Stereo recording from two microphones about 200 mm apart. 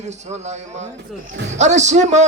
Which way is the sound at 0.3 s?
35° right (ahead or behind).